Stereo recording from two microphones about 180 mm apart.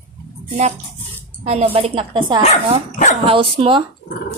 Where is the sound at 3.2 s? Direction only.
30° right (ahead or behind).